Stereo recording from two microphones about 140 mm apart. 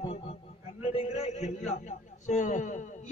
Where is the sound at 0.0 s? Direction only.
45° left (ahead or behind).